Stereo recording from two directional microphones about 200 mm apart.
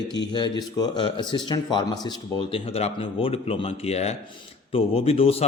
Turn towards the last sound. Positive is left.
turn(degrees=30)  # may be behind; listen again after turning